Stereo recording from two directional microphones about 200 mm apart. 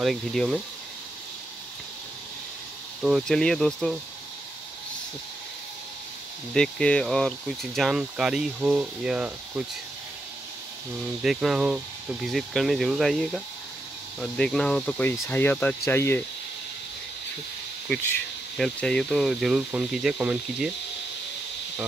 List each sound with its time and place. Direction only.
0.0 s speech: centre (ahead or behind)
3.0 s speech: centre (ahead or behind)
6.5 s speech: 5° left (ahead or behind)
11.2 s speech: 5° right (ahead or behind)
18.6 s speech: 5° left (ahead or behind)